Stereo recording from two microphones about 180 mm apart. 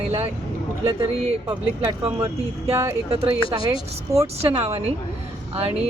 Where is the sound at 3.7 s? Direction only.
15° right (ahead or behind).